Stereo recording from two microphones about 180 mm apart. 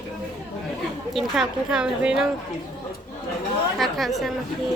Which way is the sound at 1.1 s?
5° right (ahead or behind).